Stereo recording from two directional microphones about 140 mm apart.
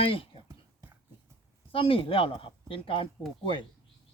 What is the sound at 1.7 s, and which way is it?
Speech, 40° left (ahead or behind).